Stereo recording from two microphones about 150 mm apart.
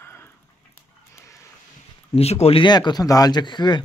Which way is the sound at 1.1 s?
20° left (ahead or behind).